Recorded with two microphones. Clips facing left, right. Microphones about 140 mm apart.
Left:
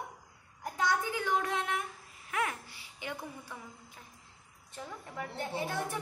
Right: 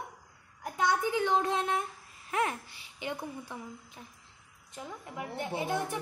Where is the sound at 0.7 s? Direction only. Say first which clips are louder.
Right 3 dB; 20° right (ahead or behind).